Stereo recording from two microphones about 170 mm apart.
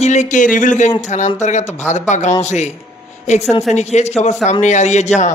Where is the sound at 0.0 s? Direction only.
45° left (ahead or behind).